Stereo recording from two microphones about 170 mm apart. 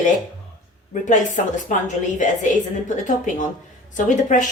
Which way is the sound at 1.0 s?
45° left (ahead or behind).